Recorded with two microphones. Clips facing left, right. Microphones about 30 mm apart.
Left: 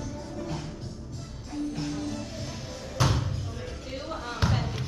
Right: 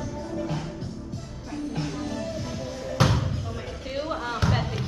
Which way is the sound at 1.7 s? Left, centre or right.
Centre.